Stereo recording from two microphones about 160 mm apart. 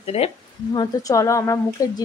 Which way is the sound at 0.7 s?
25° left (ahead or behind).